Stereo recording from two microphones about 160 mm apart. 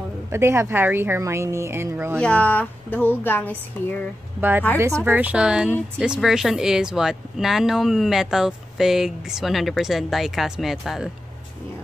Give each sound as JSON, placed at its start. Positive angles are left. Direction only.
{"t": 0.3, "sound": "speech", "side_deg": -15}
{"t": 2.1, "sound": "speech", "side_deg": 5}
{"t": 4.4, "sound": "a woman's voice", "side_deg": -10}